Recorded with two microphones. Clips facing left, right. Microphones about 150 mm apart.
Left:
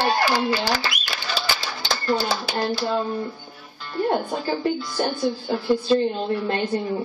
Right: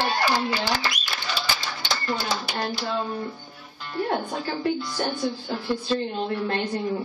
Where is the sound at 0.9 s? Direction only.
55° left (ahead or behind).